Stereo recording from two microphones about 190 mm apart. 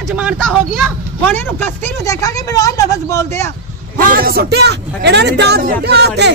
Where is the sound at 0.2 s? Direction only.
Centre (ahead or behind); by 3.4 s 15° left (ahead or behind).